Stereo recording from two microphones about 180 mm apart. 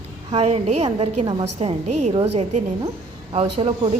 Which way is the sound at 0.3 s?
35° right (ahead or behind).